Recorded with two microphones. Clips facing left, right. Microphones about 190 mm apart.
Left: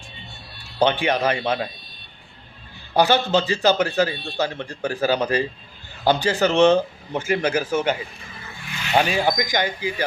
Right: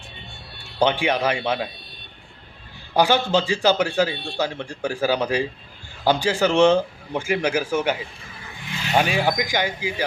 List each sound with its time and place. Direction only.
0.9 s a man's voice: 10° right (ahead or behind)
2.9 s a man's voice: 10° right (ahead or behind)
8.6 s zipper: 25° right (ahead or behind)
9.0 s a man's voice: 10° right (ahead or behind)